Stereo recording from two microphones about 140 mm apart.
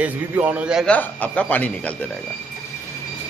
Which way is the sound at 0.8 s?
10° left (ahead or behind).